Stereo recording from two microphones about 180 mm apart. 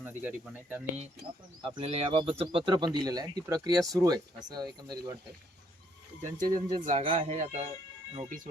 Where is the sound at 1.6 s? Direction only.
35° right (ahead or behind).